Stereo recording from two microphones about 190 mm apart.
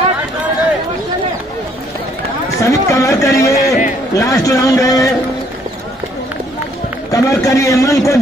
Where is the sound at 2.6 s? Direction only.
15° left (ahead or behind).